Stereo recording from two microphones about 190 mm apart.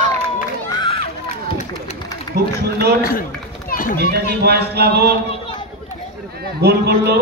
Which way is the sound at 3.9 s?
55° right (ahead or behind).